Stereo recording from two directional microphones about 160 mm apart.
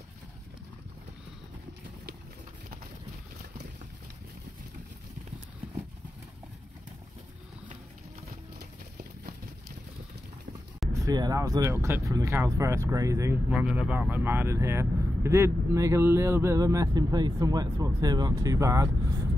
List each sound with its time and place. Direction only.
8.5 s clip-clop: 75° right (ahead or behind)
10.9 s speech: 20° right (ahead or behind)
13.5 s speech: 10° right (ahead or behind)